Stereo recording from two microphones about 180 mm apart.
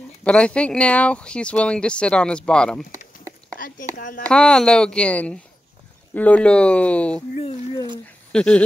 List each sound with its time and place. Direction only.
0.2 s speech: 5° left (ahead or behind)
3.5 s speech: 50° left (ahead or behind)
4.3 s speech: 5° left (ahead or behind)
8.3 s a sound: 5° left (ahead or behind)